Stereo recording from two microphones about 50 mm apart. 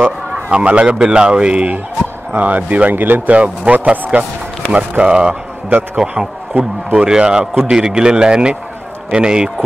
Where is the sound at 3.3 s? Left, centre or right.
Right.